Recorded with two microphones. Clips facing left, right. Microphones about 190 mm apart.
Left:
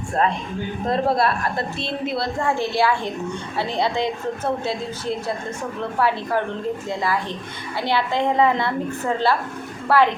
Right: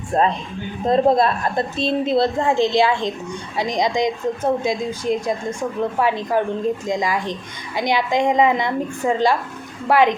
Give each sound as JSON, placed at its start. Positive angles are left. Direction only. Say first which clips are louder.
{"t": 0.9, "sound": "a woman's voice", "louder": "right 5 dB", "side_deg": -20}